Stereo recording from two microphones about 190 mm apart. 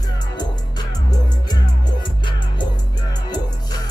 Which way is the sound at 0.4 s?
20° left (ahead or behind).